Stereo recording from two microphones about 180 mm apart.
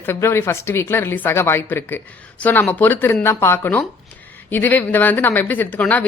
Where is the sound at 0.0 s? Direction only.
15° left (ahead or behind).